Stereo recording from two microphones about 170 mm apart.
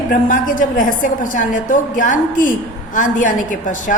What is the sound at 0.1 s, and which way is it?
A woman's voice, 50° left (ahead or behind).